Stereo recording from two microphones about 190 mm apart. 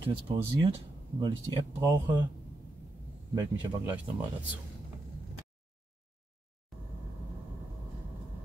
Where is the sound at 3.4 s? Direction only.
10° right (ahead or behind).